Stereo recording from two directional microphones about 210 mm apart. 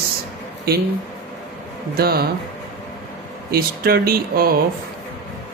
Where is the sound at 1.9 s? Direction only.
45° right (ahead or behind).